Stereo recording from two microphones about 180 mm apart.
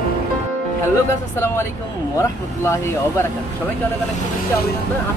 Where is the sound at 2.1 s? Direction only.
15° left (ahead or behind).